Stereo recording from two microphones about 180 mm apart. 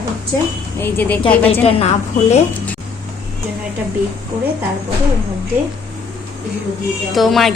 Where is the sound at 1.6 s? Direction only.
35° left (ahead or behind).